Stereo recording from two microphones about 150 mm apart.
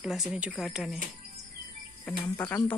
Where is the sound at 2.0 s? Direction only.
15° left (ahead or behind).